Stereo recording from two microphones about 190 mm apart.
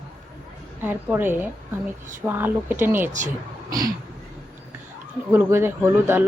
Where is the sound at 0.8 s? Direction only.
10° right (ahead or behind).